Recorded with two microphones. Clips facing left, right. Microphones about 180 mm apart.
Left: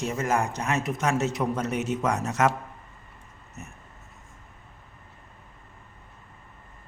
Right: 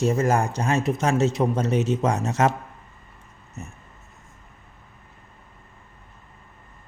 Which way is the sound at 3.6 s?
30° right (ahead or behind).